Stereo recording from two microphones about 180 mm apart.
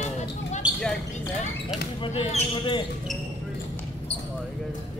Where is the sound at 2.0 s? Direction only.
35° left (ahead or behind).